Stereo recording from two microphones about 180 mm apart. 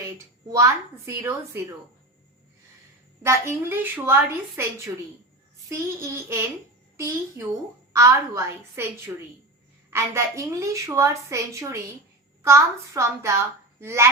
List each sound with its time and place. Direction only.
0.0 s a woman's voice: 15° right (ahead or behind)
3.2 s a woman's voice: 15° right (ahead or behind)
9.9 s a woman's voice: 15° right (ahead or behind)